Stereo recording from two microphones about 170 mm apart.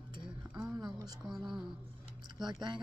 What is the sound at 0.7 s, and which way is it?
Speech, 20° right (ahead or behind).